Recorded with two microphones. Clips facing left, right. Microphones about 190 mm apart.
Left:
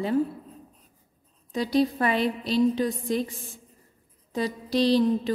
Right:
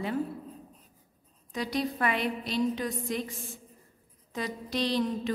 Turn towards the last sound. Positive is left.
turn(degrees=35)  # may be behind; listen again after turning